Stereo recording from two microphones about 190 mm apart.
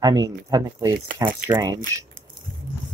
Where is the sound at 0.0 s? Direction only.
20° right (ahead or behind).